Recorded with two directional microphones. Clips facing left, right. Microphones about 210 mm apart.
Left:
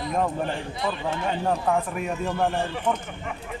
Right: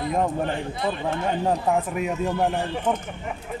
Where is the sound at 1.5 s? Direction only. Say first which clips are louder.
Even; 20° right (ahead or behind).